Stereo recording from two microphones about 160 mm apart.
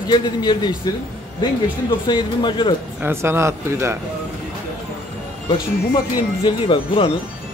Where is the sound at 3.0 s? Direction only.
15° right (ahead or behind).